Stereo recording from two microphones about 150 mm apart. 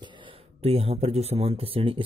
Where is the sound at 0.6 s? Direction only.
40° right (ahead or behind).